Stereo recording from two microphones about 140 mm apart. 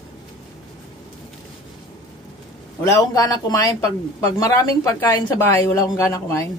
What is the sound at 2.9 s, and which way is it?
Speech, 25° left (ahead or behind).